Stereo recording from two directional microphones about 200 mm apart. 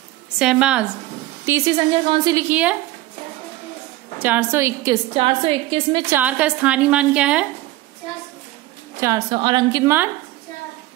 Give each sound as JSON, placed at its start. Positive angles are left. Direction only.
{"t": 0.4, "sound": "a woman's voice", "side_deg": -5}
{"t": 2.0, "sound": "a woman's voice", "side_deg": -20}
{"t": 2.4, "sound": "a woman's voice", "side_deg": -5}
{"t": 4.2, "sound": "a woman's voice", "side_deg": -10}
{"t": 5.1, "sound": "a woman's voice", "side_deg": -25}
{"t": 6.0, "sound": "a woman's voice", "side_deg": -10}
{"t": 9.0, "sound": "a woman's voice", "side_deg": -20}